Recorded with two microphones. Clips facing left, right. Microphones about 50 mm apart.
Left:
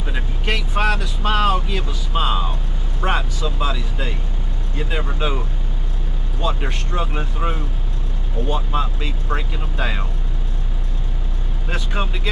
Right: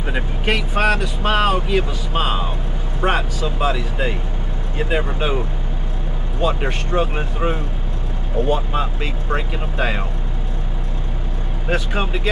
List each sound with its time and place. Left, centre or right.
0.0 s speech: centre
6.4 s speech: centre
11.6 s speech: centre